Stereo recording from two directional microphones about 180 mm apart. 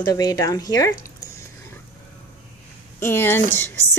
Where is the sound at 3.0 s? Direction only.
10° left (ahead or behind).